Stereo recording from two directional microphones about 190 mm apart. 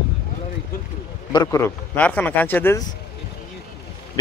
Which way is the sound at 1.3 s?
15° left (ahead or behind).